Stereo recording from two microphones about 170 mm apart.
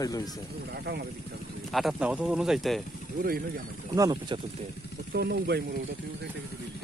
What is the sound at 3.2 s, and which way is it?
Speech, 60° right (ahead or behind).